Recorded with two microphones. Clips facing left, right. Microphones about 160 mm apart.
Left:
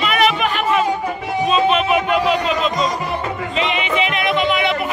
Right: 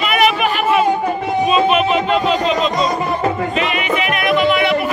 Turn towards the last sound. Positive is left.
turn(degrees=20)  # may be behind; listen again after turning